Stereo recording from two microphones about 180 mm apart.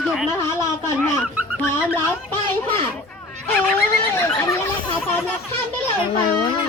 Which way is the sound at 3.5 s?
10° left (ahead or behind).